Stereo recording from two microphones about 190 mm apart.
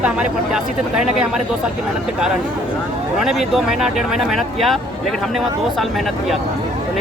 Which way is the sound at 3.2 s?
Centre (ahead or behind).